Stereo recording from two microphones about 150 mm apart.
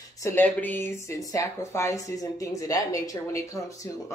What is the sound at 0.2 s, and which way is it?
Speech, 15° left (ahead or behind).